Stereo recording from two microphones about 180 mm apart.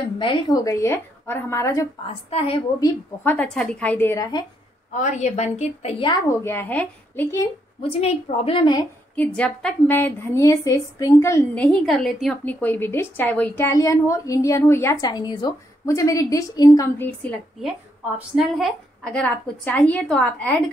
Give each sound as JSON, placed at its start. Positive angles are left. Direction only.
{"t": 0.2, "sound": "a woman's voice", "side_deg": 25}
{"t": 2.0, "sound": "a woman's voice", "side_deg": 35}
{"t": 3.3, "sound": "a woman's voice", "side_deg": 5}
{"t": 4.9, "sound": "a woman's voice", "side_deg": 40}
{"t": 6.2, "sound": "a woman's voice", "side_deg": 15}
{"t": 7.9, "sound": "a woman's voice", "side_deg": 30}
{"t": 9.1, "sound": "a woman's voice", "side_deg": 10}
{"t": 17.6, "sound": "a woman's voice", "side_deg": -5}